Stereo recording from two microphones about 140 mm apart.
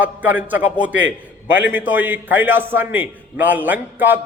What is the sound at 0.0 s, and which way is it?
A man's voice, 10° right (ahead or behind).